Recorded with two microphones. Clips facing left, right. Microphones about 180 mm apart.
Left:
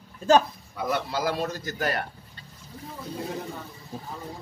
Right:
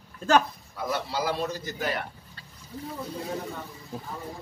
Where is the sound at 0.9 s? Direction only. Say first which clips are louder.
Left 1 dB; 50° left (ahead or behind).